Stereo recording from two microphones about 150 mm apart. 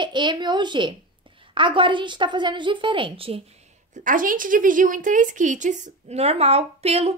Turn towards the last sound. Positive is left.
turn(degrees=-45)  # may be behind; listen again after turning